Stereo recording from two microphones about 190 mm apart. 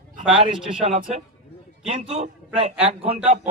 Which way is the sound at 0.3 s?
35° right (ahead or behind).